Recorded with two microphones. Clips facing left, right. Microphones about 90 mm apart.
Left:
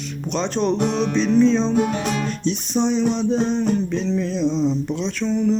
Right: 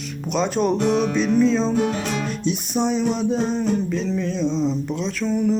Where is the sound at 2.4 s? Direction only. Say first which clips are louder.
Left 1 dB; 10° right (ahead or behind).